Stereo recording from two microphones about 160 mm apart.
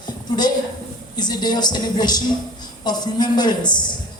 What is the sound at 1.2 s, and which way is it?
A man's voice, 25° left (ahead or behind).